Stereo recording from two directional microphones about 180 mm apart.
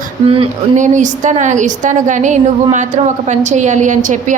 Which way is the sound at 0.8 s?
45° right (ahead or behind).